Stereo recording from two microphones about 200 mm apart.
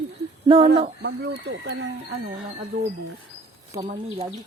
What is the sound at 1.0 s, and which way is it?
Speech, 60° right (ahead or behind).